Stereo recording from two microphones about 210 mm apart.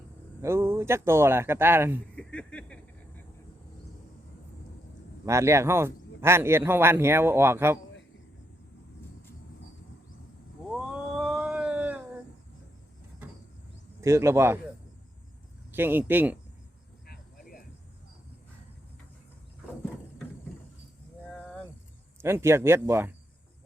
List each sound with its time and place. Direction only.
0.4 s a man's voice: 10° right (ahead or behind)
2.1 s speech: 5° left (ahead or behind)
5.2 s a man's voice: 15° right (ahead or behind)
10.7 s cat: centre (ahead or behind)
14.0 s a man's voice: 15° right (ahead or behind)
15.7 s a man's voice: 10° right (ahead or behind)
17.1 s a sound: 45° left (ahead or behind)
21.2 s vehicle: 5° left (ahead or behind)
22.2 s a man's voice: 10° right (ahead or behind)